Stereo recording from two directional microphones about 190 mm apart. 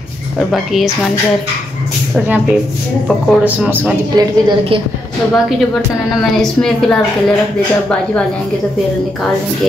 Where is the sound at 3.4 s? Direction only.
10° right (ahead or behind).